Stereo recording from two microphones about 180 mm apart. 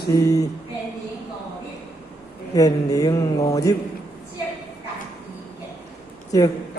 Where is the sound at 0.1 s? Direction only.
20° left (ahead or behind).